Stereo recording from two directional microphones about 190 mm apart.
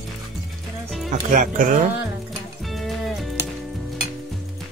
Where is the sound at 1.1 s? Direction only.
45° right (ahead or behind).